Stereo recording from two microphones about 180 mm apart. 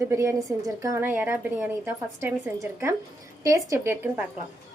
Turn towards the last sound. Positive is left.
turn(degrees=-15)  # may be behind; listen again after turning